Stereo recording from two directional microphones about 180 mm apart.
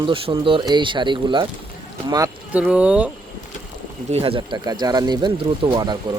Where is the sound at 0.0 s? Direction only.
30° right (ahead or behind).